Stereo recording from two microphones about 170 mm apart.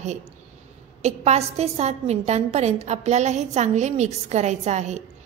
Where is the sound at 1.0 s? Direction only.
40° right (ahead or behind).